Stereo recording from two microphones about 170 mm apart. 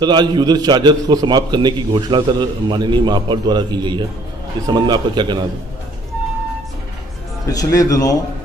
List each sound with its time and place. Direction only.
0.0 s a man's voice: 25° right (ahead or behind)
7.4 s a man's voice: 20° left (ahead or behind)